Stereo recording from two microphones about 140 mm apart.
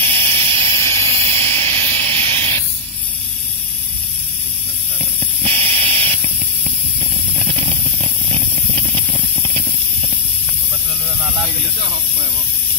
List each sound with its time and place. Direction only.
0.0 s a sound: 40° right (ahead or behind)
0.7 s vehicle: 20° left (ahead or behind)
1.0 s hiss: 45° right (ahead or behind)
5.4 s hiss: 45° right (ahead or behind)
9.1 s spray: 45° right (ahead or behind)